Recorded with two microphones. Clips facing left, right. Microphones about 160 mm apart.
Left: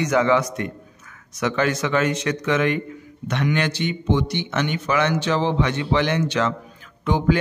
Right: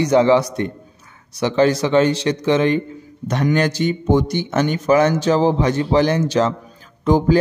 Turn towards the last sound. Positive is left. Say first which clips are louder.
# right 6 dB
turn(degrees=-35)  # may be behind; listen again after turning